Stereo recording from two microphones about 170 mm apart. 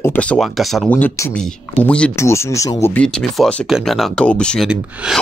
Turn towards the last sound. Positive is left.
turn(degrees=-5)  # may be behind; listen again after turning